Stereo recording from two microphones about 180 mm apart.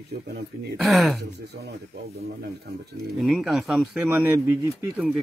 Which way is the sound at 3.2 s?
Centre (ahead or behind).